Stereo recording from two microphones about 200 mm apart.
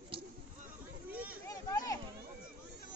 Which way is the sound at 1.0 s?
10° right (ahead or behind).